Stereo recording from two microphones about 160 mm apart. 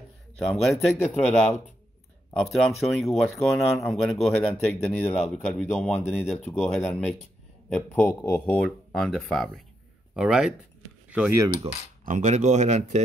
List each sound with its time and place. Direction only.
0.5 s a man's voice: centre (ahead or behind)
8.5 s speech: 5° left (ahead or behind)
12.0 s speech: 50° right (ahead or behind)